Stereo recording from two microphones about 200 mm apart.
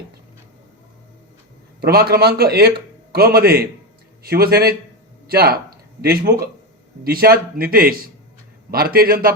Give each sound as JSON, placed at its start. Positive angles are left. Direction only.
{"t": 1.8, "sound": "a man's voice", "side_deg": -50}